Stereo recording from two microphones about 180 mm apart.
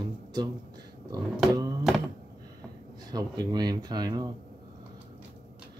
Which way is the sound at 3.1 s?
20° right (ahead or behind).